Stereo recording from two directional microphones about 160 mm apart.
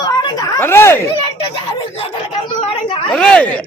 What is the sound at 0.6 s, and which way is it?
Speech, 15° left (ahead or behind).